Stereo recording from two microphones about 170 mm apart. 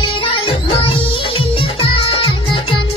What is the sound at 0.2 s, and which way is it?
Music, 30° left (ahead or behind).